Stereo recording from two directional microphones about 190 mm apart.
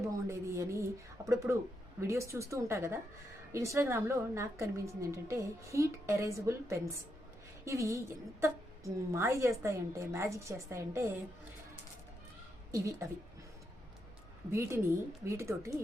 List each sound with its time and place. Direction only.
0.1 s a sound: 15° right (ahead or behind)
1.5 s a woman's voice: 15° right (ahead or behind)
12.7 s a woman's voice: 15° right (ahead or behind)
14.5 s a woman's voice: 15° right (ahead or behind)